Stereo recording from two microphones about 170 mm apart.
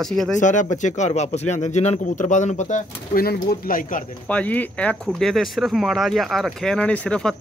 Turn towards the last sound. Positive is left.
turn(degrees=5)  # may be behind; listen again after turning